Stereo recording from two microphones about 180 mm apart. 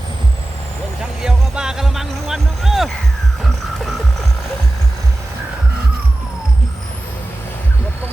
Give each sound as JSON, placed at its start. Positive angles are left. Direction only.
{"t": 1.2, "sound": "music", "side_deg": -5}